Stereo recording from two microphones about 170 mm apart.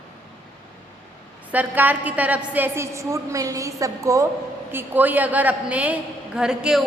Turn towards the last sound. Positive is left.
turn(degrees=-5)  # may be behind; listen again after turning